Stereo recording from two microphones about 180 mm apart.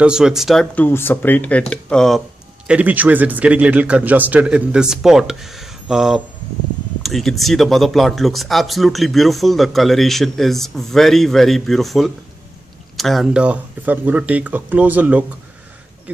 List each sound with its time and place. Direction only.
0.0 s speech: 5° right (ahead or behind)
2.7 s speech: 10° right (ahead or behind)